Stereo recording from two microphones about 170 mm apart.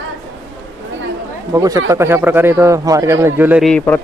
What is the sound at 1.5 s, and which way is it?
A man's voice, 20° right (ahead or behind).